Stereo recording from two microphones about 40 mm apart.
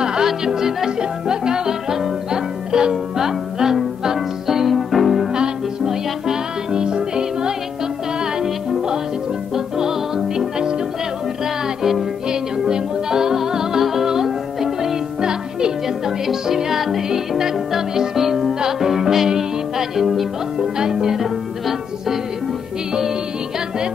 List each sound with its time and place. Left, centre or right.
0.0 s music: centre
5.9 s music: centre
12.3 s music: centre